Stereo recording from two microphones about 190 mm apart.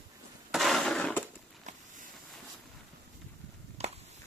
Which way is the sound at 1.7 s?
40° right (ahead or behind).